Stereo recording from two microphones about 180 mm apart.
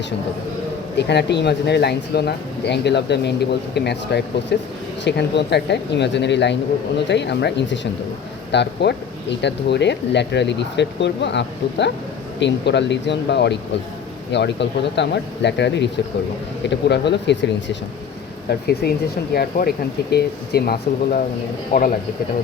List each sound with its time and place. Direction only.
0.9 s speech: 70° left (ahead or behind)
18.4 s speech: 60° left (ahead or behind)
21.7 s speech: 50° left (ahead or behind)